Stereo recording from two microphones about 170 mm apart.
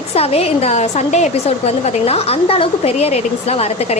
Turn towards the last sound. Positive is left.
turn(degrees=40)  # may be behind; listen again after turning